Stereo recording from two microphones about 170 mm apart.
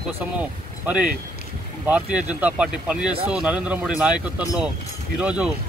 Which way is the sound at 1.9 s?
5° right (ahead or behind).